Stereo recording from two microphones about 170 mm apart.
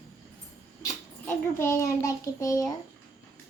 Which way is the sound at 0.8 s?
15° left (ahead or behind).